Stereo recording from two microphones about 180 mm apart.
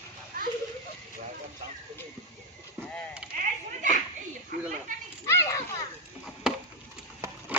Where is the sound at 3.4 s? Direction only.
45° right (ahead or behind).